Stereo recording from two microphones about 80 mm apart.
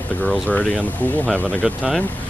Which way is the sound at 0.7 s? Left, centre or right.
Centre.